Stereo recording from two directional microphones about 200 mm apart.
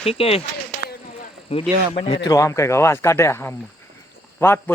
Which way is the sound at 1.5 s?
30° left (ahead or behind).